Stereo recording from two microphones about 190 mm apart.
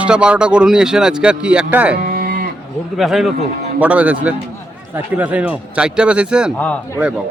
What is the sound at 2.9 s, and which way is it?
Speech, centre (ahead or behind).